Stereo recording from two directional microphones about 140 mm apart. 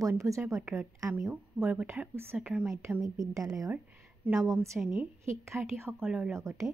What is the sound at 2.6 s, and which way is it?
A woman's voice, 20° right (ahead or behind).